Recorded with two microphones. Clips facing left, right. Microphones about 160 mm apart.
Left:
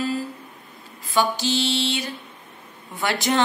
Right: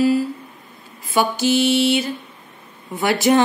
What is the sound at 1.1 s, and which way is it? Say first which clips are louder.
Mantra: right 4 dB; 15° right (ahead or behind).